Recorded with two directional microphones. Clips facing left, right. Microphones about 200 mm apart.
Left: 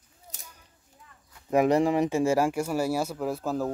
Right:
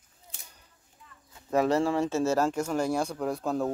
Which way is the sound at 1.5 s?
15° left (ahead or behind).